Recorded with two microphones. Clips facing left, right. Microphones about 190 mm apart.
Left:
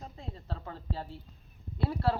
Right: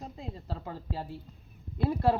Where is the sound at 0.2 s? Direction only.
10° right (ahead or behind).